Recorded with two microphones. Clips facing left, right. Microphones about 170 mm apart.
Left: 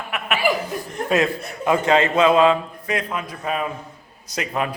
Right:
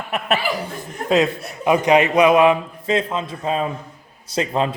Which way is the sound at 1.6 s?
15° right (ahead or behind).